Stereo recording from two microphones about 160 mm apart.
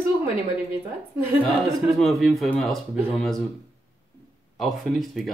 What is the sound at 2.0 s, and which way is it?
Speech, centre (ahead or behind).